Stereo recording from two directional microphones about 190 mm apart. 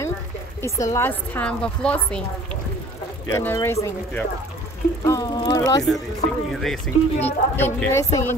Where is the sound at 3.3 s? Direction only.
10° left (ahead or behind).